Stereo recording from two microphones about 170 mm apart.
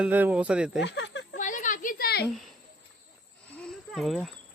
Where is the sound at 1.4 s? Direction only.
50° left (ahead or behind).